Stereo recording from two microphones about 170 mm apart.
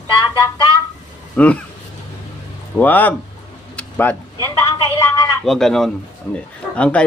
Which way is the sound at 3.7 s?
10° left (ahead or behind).